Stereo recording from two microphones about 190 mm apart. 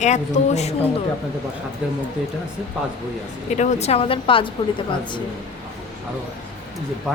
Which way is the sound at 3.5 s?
35° left (ahead or behind).